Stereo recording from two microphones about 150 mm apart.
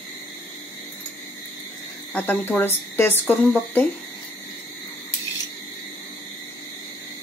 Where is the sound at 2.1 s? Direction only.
10° left (ahead or behind).